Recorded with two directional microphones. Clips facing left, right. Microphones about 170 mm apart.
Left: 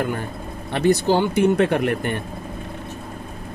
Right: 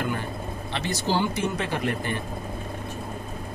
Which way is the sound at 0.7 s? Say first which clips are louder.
Left 9 dB; 55° left (ahead or behind).